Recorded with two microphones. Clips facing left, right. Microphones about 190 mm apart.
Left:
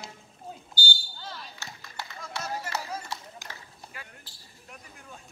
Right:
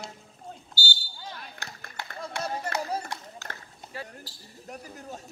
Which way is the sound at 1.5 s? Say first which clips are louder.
Right 1 dB; 55° right (ahead or behind).